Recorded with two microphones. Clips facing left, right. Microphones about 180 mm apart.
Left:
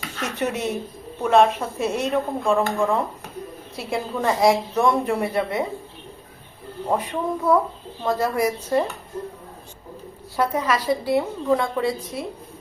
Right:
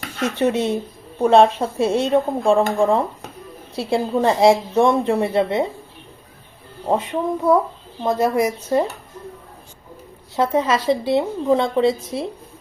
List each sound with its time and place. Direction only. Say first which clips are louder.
0.3 s a woman's voice: right 6 dB; 30° right (ahead or behind)
6.8 s a woman's voice: right 3 dB; 25° right (ahead or behind)
10.3 s a woman's voice: right 4 dB; 25° right (ahead or behind)